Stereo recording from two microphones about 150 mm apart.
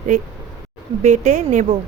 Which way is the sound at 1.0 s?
50° right (ahead or behind).